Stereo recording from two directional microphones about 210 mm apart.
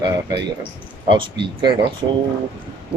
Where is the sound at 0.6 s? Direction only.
25° right (ahead or behind).